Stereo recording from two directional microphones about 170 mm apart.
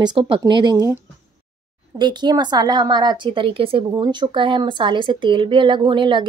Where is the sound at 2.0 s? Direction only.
25° right (ahead or behind).